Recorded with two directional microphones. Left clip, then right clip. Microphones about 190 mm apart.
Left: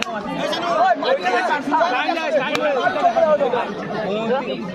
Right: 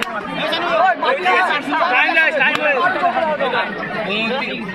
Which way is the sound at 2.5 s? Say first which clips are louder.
Right 3 dB; 35° right (ahead or behind).